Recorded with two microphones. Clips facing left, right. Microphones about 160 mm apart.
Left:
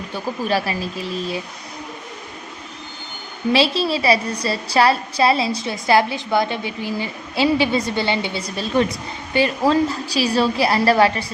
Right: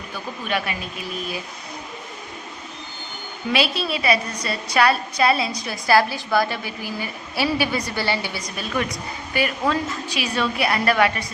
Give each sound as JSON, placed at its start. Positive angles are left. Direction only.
{"t": 0.1, "sound": "speech", "side_deg": 35}
{"t": 3.5, "sound": "a woman's voice", "side_deg": 30}